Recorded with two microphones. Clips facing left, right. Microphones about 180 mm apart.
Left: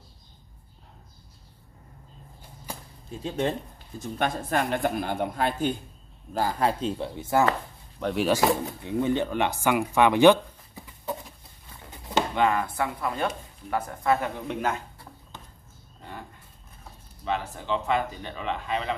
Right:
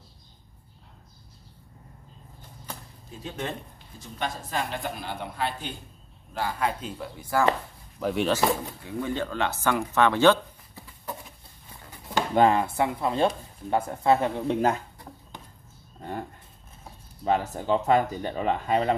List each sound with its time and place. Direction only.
3.3 s speech: 30° left (ahead or behind)
4.0 s speech: 55° left (ahead or behind)
6.8 s speech: 25° left (ahead or behind)
8.0 s speech: centre (ahead or behind)
8.8 s speech: 20° left (ahead or behind)
12.4 s speech: 30° right (ahead or behind)
16.0 s dog: 45° right (ahead or behind)
17.2 s speech: 40° right (ahead or behind)